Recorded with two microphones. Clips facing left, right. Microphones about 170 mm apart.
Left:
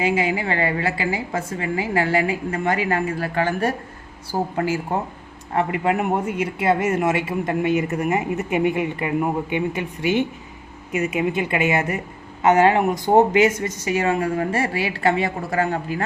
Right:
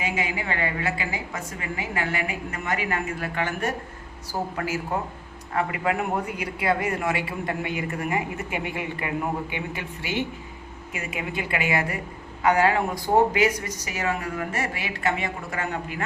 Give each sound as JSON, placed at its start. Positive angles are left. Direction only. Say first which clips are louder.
{"t": 0.0, "sound": "a woman's voice", "louder": "left 7 dB", "side_deg": 30}